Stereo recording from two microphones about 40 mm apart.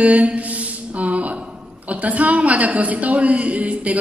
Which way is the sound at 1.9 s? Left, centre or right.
Right.